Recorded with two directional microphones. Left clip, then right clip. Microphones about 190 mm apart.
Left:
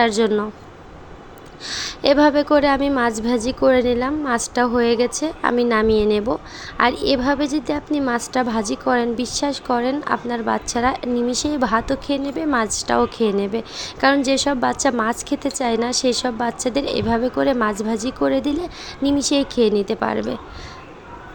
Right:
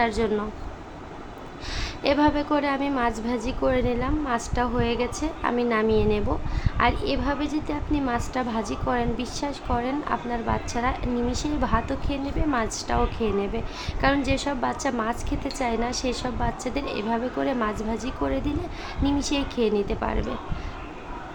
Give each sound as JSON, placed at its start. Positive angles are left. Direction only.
{"t": 0.0, "sound": "a woman's voice", "side_deg": 35}
{"t": 1.6, "sound": "a woman's voice", "side_deg": 30}